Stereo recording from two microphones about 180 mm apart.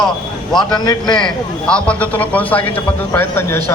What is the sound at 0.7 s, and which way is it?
Speech, 25° left (ahead or behind).